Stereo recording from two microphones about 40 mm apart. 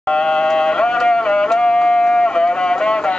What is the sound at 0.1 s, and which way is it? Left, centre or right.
Music, left.